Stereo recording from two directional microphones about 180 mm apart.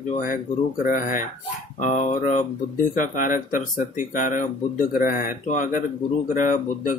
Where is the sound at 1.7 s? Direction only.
45° left (ahead or behind).